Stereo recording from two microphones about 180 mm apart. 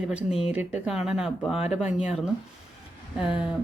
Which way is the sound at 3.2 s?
5° right (ahead or behind).